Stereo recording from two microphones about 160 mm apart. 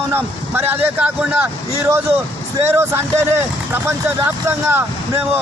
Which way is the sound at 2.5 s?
15° right (ahead or behind).